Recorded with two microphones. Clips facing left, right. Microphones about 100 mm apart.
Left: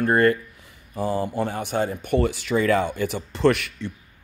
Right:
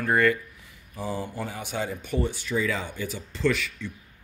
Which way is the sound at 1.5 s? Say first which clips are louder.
Left 6 dB; 50° left (ahead or behind).